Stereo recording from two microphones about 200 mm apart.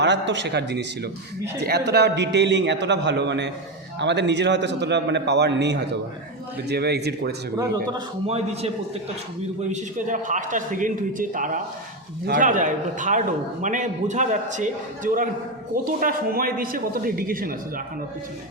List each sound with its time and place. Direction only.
0.0 s a man's voice: 60° right (ahead or behind)
7.9 s a man's voice: 30° right (ahead or behind); by 17.8 s 45° right (ahead or behind)